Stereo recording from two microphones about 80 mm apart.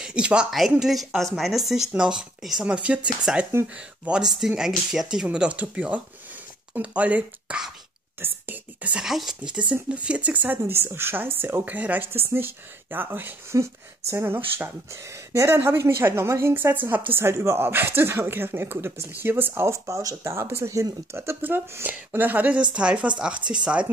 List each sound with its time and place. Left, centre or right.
0.0 s speech: centre
4.2 s speech: centre
8.2 s a sound: right
9.0 s speech: centre